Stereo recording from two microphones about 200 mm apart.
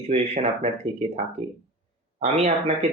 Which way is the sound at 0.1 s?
35° right (ahead or behind).